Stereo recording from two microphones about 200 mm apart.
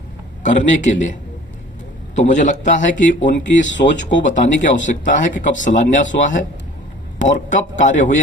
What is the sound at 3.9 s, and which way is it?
Speech, 65° left (ahead or behind).